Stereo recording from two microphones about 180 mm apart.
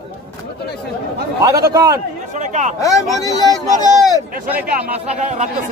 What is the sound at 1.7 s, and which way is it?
Speech, 20° right (ahead or behind).